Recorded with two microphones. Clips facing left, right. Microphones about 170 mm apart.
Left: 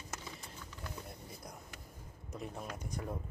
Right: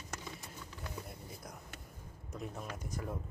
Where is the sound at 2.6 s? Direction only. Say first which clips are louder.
Even; centre (ahead or behind).